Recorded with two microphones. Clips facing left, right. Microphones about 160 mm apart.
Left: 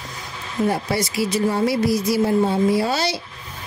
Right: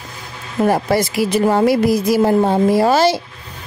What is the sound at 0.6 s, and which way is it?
Speech, 50° right (ahead or behind).